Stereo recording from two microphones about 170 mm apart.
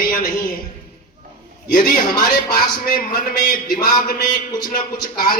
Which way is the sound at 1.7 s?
55° left (ahead or behind).